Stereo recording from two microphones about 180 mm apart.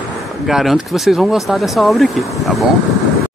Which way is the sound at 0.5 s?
Centre (ahead or behind).